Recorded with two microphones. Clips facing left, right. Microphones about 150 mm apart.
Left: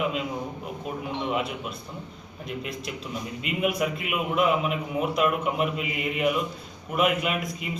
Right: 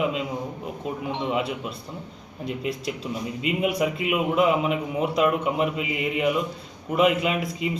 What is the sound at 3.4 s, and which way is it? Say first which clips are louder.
A man's voice: right 2 dB; 25° right (ahead or behind).